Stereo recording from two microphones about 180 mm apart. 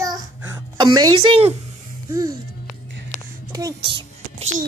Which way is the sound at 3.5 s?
20° right (ahead or behind).